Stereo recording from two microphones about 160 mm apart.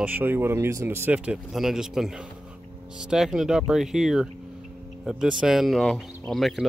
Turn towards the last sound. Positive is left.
turn(degrees=0)  # may be behind; listen again after turning